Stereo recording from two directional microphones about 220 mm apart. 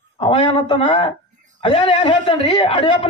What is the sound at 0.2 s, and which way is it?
A man's voice, 20° left (ahead or behind).